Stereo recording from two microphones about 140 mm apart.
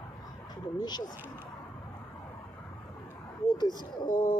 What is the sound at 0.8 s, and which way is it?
Speech, 30° left (ahead or behind).